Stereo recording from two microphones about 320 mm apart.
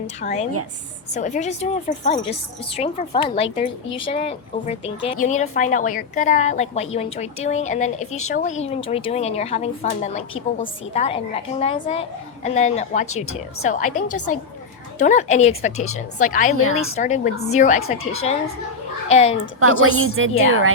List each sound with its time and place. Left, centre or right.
0.2 s a woman's voice: left
8.1 s speech: left
8.4 s a woman's voice: left
19.8 s a woman's voice: right